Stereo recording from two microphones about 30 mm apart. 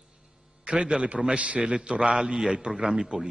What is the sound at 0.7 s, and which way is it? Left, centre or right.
A man's voice, right.